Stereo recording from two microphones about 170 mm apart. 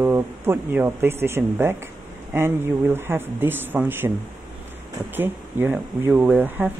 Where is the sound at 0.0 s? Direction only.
15° right (ahead or behind).